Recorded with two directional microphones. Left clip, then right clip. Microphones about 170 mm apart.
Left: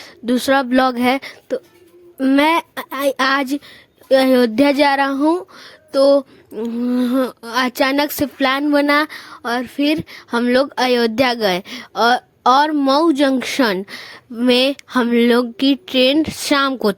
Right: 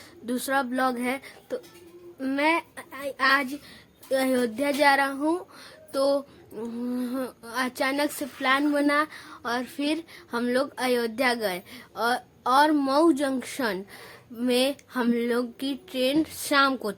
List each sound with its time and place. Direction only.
0.0 s speech: 50° left (ahead or behind)
2.4 s speech: 75° left (ahead or behind)
4.1 s speech: 55° left (ahead or behind)
5.3 s speech: 45° left (ahead or behind)